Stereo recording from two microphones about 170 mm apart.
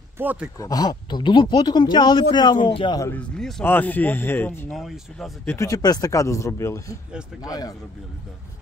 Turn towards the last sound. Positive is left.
turn(degrees=20)  # may be behind; listen again after turning